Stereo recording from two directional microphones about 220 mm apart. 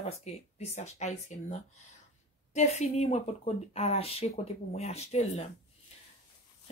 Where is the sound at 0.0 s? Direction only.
30° left (ahead or behind).